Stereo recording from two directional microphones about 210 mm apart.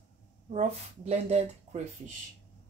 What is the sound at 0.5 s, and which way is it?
Speech, 30° right (ahead or behind).